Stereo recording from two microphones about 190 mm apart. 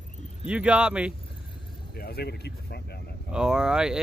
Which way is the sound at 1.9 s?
55° left (ahead or behind).